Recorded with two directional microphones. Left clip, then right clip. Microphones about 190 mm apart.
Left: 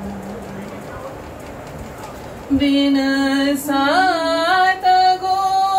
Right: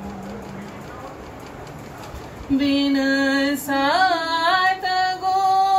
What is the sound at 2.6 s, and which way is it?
Music, 15° right (ahead or behind).